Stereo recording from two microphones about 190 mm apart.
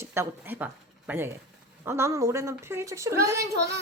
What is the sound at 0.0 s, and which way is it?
A woman's voice, 15° right (ahead or behind).